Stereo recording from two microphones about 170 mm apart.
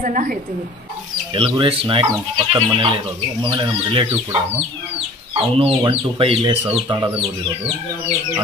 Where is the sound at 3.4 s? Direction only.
30° right (ahead or behind).